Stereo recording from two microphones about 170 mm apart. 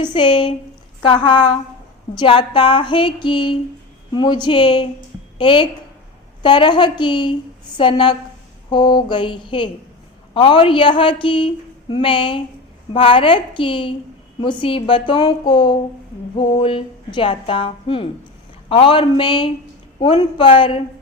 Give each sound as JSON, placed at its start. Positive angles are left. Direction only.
{"t": 0.0, "sound": "a woman's voice", "side_deg": 30}